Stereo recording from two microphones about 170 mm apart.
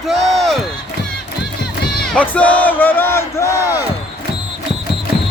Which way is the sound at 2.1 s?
10° left (ahead or behind).